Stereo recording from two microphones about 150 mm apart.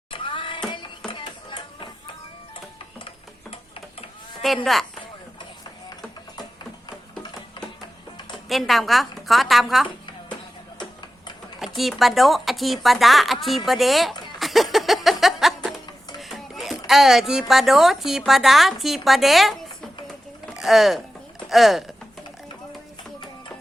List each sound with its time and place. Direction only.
0.1 s a sound: 35° left (ahead or behind)
4.4 s speech: centre (ahead or behind)
8.4 s speech: centre (ahead or behind)
11.8 s speech: centre (ahead or behind)
13.7 s a sound: centre (ahead or behind)
17.5 s speech: centre (ahead or behind)